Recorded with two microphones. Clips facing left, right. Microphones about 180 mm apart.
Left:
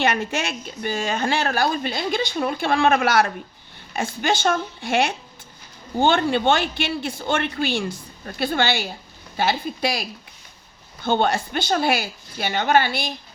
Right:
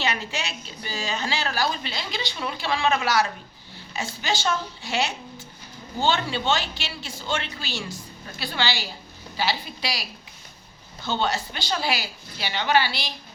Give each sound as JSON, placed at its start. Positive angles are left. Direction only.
{"t": 0.0, "sound": "a woman's voice", "side_deg": 55}